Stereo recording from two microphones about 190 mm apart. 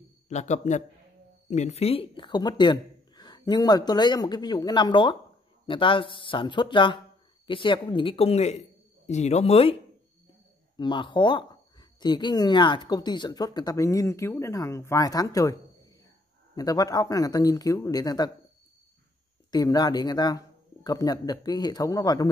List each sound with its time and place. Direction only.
0.3 s speech: 40° left (ahead or behind)
10.8 s speech: 25° left (ahead or behind)
16.5 s speech: 20° left (ahead or behind)
19.5 s speech: 20° left (ahead or behind)